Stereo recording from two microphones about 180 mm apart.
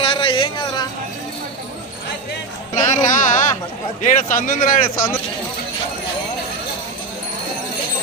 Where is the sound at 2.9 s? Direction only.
45° left (ahead or behind).